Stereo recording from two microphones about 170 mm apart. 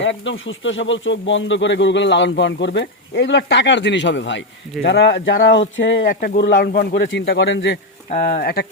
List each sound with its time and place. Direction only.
0.0 s speech: 90° left
6.1 s speech: 60° left (ahead or behind); by 7.8 s 90° left
8.3 s speech: 65° left (ahead or behind)